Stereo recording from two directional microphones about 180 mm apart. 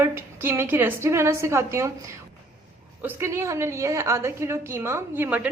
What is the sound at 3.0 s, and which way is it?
A woman's voice, 10° right (ahead or behind).